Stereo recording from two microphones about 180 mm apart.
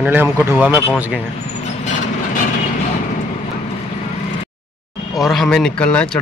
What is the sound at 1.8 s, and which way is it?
Vehicle, 45° left (ahead or behind).